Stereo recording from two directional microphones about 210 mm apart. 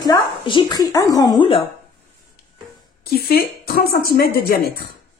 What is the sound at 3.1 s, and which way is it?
A woman's voice, 45° left (ahead or behind).